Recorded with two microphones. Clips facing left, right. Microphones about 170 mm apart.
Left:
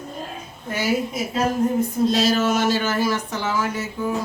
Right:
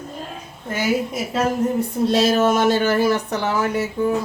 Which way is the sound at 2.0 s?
60° right (ahead or behind).